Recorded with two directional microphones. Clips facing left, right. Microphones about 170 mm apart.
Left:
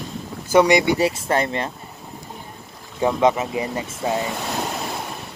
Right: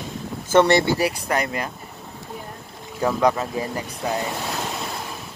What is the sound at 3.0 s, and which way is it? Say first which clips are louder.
Speech: left 2 dB; 20° left (ahead or behind).